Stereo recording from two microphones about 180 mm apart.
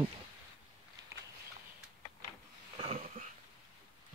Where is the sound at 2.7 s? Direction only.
35° right (ahead or behind).